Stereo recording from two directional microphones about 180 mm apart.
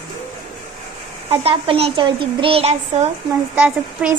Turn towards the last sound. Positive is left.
turn(degrees=-5)  # may be behind; listen again after turning